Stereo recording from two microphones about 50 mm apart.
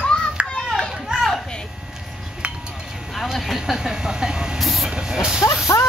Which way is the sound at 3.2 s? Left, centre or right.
Centre.